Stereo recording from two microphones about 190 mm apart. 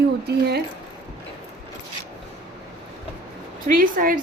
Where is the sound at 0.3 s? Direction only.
60° right (ahead or behind).